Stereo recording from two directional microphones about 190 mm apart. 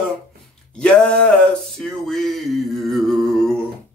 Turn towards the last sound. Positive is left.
turn(degrees=0)  # may be behind; listen again after turning